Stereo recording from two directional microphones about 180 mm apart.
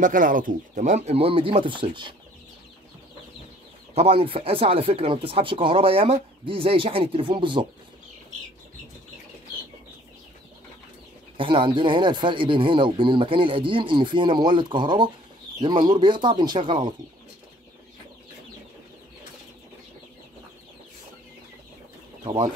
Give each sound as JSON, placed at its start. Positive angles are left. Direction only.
{"t": 0.0, "sound": "speech", "side_deg": -45}
{"t": 3.9, "sound": "speech", "side_deg": -30}
{"t": 11.3, "sound": "speech", "side_deg": -30}
{"t": 22.2, "sound": "speech", "side_deg": -25}